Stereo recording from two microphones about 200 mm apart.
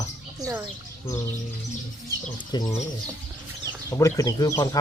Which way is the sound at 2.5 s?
20° left (ahead or behind).